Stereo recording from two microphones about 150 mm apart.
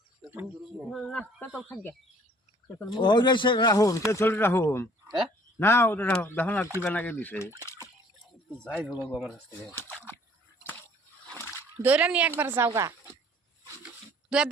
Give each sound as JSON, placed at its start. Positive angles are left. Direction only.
{"t": 0.2, "sound": "a sound", "side_deg": -10}
{"t": 0.9, "sound": "speech", "side_deg": 5}
{"t": 3.0, "sound": "speech", "side_deg": 30}
{"t": 8.6, "sound": "speech", "side_deg": 5}
{"t": 9.5, "sound": "speech", "side_deg": 15}
{"t": 11.3, "sound": "splash", "side_deg": 15}
{"t": 11.8, "sound": "speech", "side_deg": -10}
{"t": 13.7, "sound": "a sound", "side_deg": -10}